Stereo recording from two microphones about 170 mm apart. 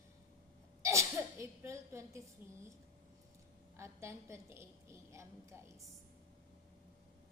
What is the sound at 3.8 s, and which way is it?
A woman's voice, 15° right (ahead or behind).